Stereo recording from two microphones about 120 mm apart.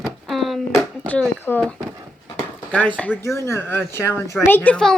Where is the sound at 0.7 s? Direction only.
15° left (ahead or behind).